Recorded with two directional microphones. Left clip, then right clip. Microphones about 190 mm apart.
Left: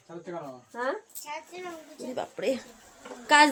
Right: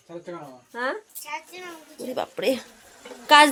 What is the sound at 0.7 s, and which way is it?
Speech, 25° right (ahead or behind).